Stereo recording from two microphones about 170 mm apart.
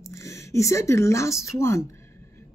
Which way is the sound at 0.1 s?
15° left (ahead or behind).